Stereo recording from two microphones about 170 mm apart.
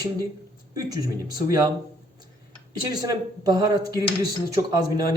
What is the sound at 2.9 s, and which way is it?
A man's voice, 25° right (ahead or behind).